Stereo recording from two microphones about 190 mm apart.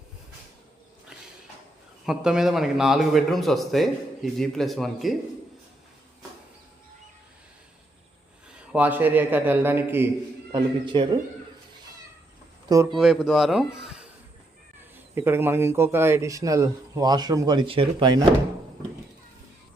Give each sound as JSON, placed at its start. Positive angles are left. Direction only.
{"t": 2.0, "sound": "speech", "side_deg": -5}
{"t": 8.5, "sound": "a man's voice", "side_deg": -5}
{"t": 10.5, "sound": "speech", "side_deg": -25}
{"t": 12.6, "sound": "a man's voice", "side_deg": -20}
{"t": 13.0, "sound": "speech", "side_deg": 0}
{"t": 15.1, "sound": "a man's voice", "side_deg": -10}